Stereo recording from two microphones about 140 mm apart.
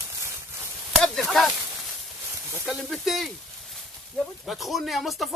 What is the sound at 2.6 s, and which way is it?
Speech, centre (ahead or behind).